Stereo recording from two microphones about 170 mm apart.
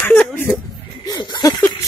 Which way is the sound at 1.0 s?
25° left (ahead or behind).